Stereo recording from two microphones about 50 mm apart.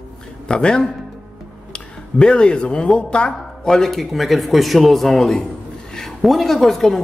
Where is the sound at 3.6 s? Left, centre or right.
Centre.